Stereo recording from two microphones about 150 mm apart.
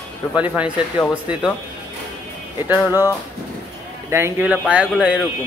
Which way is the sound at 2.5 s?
10° right (ahead or behind).